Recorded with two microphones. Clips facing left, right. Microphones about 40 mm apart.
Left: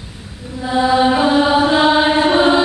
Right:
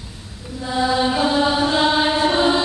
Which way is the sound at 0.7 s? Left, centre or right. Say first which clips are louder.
Left 5 dB; centre.